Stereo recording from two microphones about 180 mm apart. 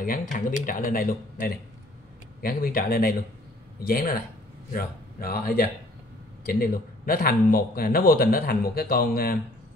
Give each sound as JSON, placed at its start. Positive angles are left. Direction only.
{"t": 0.0, "sound": "a man's voice", "side_deg": 50}